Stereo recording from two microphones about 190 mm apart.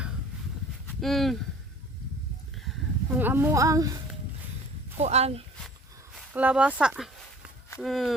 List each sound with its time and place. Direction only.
1.0 s speech: centre (ahead or behind)
3.2 s a woman's voice: 10° right (ahead or behind)
4.9 s speech: 35° right (ahead or behind)
6.3 s a woman's voice: 10° right (ahead or behind)